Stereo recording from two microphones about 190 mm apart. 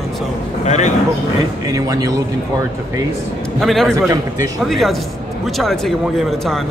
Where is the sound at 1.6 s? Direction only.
20° right (ahead or behind).